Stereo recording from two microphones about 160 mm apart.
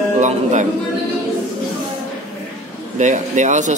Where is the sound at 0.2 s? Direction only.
50° right (ahead or behind).